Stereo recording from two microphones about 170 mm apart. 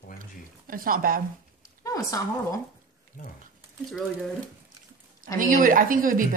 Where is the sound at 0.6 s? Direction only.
55° right (ahead or behind).